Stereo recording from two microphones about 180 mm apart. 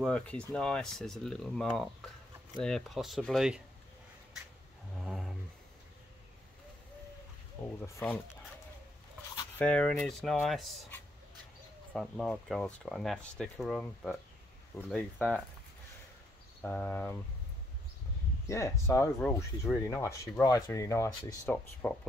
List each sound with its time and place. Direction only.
0.0 s speech: 5° left (ahead or behind)
4.9 s a sound: centre (ahead or behind)
7.8 s speech: 15° left (ahead or behind)
9.6 s speech: 5° left (ahead or behind)
11.9 s speech: centre (ahead or behind)
16.6 s speech: 10° left (ahead or behind)
18.5 s speech: 15° left (ahead or behind)